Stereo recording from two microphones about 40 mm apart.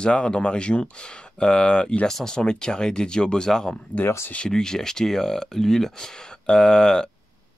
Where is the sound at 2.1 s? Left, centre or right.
Centre.